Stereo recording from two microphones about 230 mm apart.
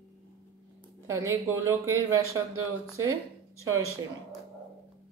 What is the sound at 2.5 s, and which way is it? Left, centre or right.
Speech, right.